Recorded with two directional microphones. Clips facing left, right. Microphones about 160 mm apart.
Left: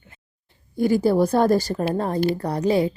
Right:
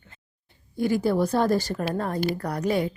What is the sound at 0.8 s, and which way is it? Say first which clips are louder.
A woman's voice: left 4 dB; 35° left (ahead or behind).